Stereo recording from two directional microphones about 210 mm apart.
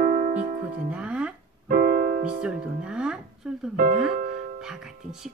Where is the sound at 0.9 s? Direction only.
5° right (ahead or behind).